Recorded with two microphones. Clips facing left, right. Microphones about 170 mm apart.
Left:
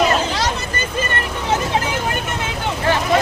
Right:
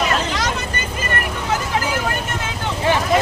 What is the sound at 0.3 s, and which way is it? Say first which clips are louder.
Vehicle: left 1 dB; 30° left (ahead or behind).